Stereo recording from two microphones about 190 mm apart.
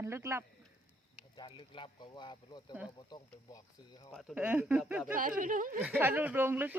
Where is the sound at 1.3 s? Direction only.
25° left (ahead or behind).